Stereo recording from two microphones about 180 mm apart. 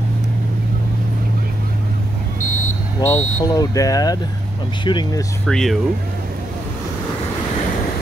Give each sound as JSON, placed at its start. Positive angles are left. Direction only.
{"t": 3.0, "sound": "speech", "side_deg": 15}
{"t": 5.5, "sound": "speech", "side_deg": 5}